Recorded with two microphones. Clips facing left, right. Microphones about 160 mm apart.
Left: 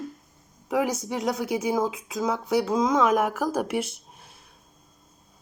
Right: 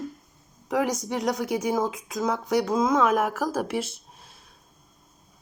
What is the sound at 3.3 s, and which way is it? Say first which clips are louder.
Speech: left 1 dB; 5° right (ahead or behind).